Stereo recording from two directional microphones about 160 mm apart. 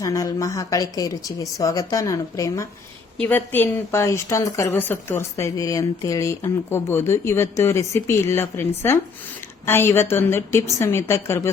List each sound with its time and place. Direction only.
0.0 s a woman's voice: 20° left (ahead or behind)